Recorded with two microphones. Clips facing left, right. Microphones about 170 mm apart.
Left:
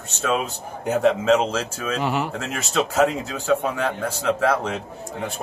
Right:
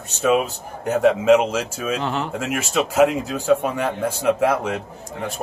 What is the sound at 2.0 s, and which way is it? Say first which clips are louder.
Speech: left 1 dB; 5° left (ahead or behind).